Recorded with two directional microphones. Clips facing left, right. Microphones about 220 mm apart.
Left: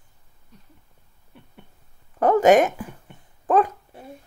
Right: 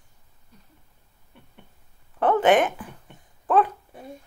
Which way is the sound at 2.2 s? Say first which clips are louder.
Left 3 dB; 40° left (ahead or behind).